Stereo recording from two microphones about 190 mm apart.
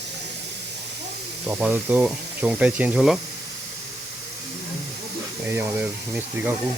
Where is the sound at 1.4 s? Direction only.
10° right (ahead or behind).